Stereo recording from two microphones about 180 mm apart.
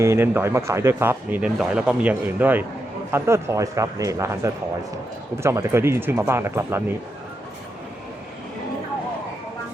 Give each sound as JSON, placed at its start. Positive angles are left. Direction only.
{"t": 0.0, "sound": "speech", "side_deg": -15}